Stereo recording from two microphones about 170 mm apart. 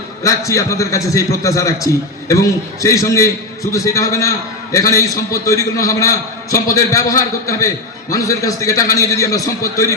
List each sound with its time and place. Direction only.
0.2 s a man's voice: 20° left (ahead or behind)